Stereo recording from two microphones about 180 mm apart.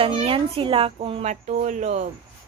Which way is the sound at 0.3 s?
30° right (ahead or behind).